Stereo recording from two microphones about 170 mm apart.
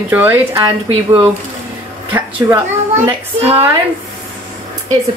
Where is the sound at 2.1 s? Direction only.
10° right (ahead or behind).